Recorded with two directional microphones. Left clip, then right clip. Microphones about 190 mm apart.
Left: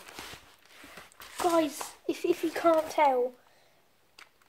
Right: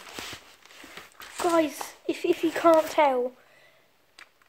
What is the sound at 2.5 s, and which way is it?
Speech, 15° right (ahead or behind).